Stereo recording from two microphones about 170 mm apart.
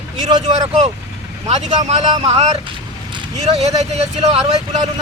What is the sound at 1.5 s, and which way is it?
Speech, 40° right (ahead or behind).